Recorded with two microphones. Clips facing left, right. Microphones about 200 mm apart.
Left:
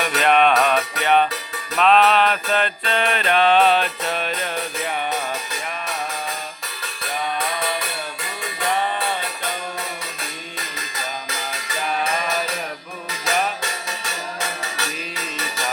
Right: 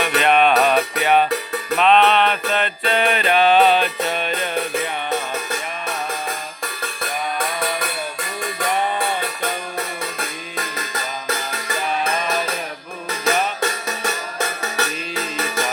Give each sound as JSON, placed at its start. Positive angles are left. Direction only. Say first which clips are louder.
{"t": 0.2, "sound": "music", "louder": "right 1 dB", "side_deg": 0}
{"t": 1.8, "sound": "mantra", "louder": "even", "side_deg": 0}
{"t": 13.1, "sound": "music", "louder": "right 3 dB", "side_deg": -55}